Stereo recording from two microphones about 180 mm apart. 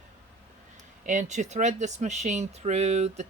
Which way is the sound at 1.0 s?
40° right (ahead or behind).